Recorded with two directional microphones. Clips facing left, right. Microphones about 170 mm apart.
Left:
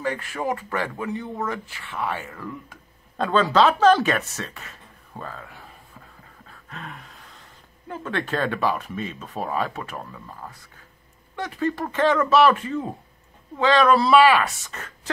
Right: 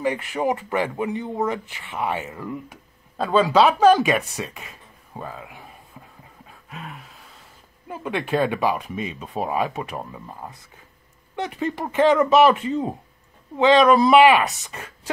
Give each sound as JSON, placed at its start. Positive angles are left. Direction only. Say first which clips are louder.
{"t": 0.0, "sound": "speech", "louder": "right 4 dB", "side_deg": -15}
{"t": 3.2, "sound": "a sound", "louder": "right 2 dB", "side_deg": -10}
{"t": 7.9, "sound": "speech", "louder": "right 3 dB", "side_deg": -10}